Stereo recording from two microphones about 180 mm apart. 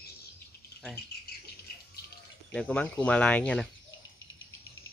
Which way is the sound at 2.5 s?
5° left (ahead or behind).